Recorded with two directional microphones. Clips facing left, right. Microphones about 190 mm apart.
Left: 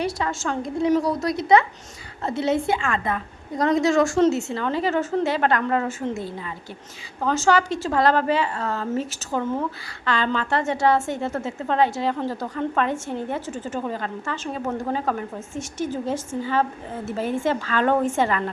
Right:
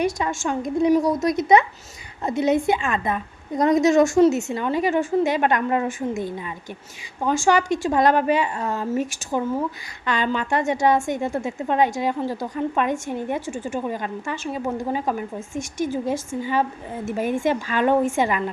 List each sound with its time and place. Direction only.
0.0 s a woman's voice: 15° right (ahead or behind)